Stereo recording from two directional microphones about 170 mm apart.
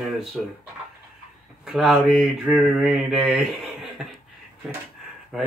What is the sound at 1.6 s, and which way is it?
Speech, centre (ahead or behind).